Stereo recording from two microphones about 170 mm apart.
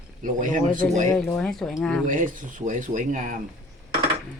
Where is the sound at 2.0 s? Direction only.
50° right (ahead or behind).